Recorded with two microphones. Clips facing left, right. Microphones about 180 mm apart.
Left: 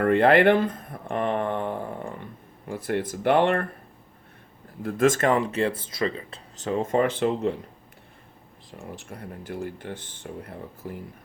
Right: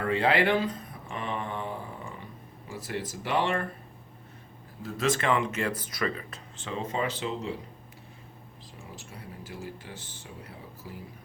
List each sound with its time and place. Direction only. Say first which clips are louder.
0.0 s speech: left 7 dB; 55° left (ahead or behind)
4.8 s speech: left 7 dB; 55° left (ahead or behind); by 6.4 s 25° left (ahead or behind)
6.6 s speech: left 8 dB; 45° left (ahead or behind)
8.7 s speech: left 7 dB; 60° left (ahead or behind)